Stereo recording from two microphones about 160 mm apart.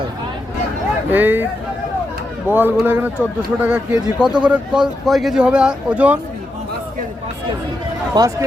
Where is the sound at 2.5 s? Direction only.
10° right (ahead or behind).